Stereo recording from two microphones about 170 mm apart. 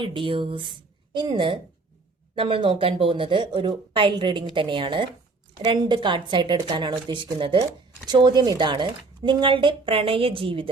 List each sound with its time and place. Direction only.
0.0 s a woman's voice: 30° right (ahead or behind)